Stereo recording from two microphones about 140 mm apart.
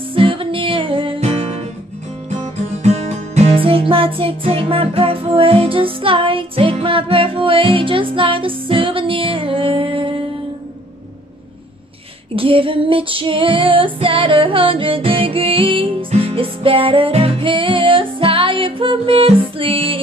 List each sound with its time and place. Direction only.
0.1 s music: 40° right (ahead or behind)
12.4 s female singing: 40° right (ahead or behind)